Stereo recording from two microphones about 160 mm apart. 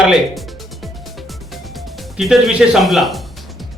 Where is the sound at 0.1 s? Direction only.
Centre (ahead or behind).